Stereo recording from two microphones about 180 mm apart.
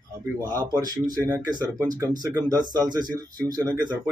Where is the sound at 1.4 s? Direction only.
20° right (ahead or behind).